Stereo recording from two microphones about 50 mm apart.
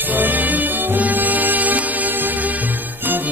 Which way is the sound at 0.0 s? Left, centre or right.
Right.